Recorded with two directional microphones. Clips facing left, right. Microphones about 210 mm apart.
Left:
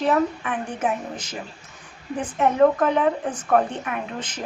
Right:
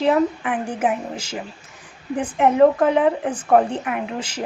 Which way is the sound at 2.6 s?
25° right (ahead or behind).